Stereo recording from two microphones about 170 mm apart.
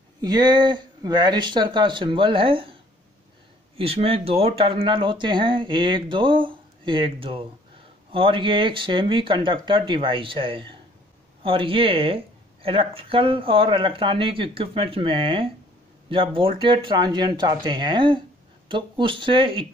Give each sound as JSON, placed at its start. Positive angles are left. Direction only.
{"t": 0.2, "sound": "speech", "side_deg": -25}
{"t": 3.7, "sound": "speech", "side_deg": -35}